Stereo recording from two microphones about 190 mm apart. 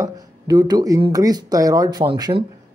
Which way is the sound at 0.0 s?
20° right (ahead or behind).